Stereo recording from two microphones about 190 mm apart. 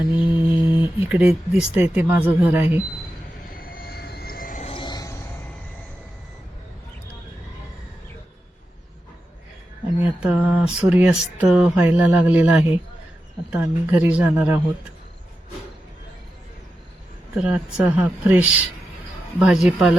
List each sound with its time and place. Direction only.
0.3 s speech: 10° right (ahead or behind)
3.5 s vehicle: 50° left (ahead or behind)
4.6 s a sound: 25° left (ahead or behind)
10.0 s speech: 5° right (ahead or behind)
17.3 s speech: 5° right (ahead or behind)